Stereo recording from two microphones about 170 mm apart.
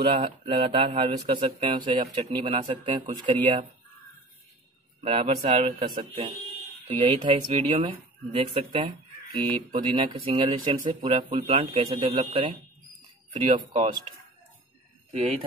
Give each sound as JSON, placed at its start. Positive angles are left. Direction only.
{"t": 0.0, "sound": "speech", "side_deg": -30}
{"t": 5.0, "sound": "speech", "side_deg": -35}